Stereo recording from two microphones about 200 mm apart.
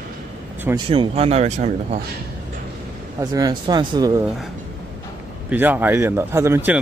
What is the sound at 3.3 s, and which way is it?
Speech, 20° right (ahead or behind).